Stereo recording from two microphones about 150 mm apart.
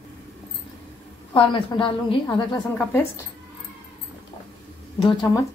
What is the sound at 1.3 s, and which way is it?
Speech, 35° left (ahead or behind).